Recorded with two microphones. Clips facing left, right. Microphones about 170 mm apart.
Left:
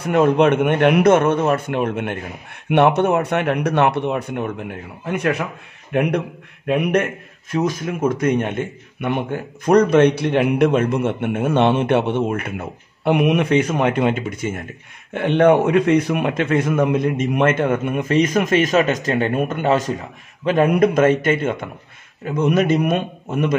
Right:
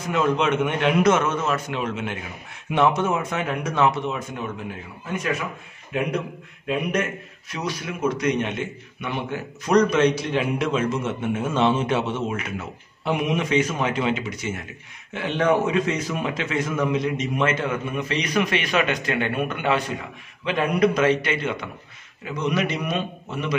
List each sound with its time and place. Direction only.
0.0 s a man's voice: 60° left (ahead or behind)
7.5 s a man's voice: 45° left (ahead or behind)